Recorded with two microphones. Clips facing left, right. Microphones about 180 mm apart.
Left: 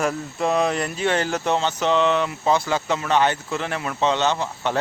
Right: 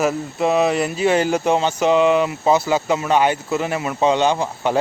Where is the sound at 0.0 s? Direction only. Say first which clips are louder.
Right 4 dB; 5° right (ahead or behind).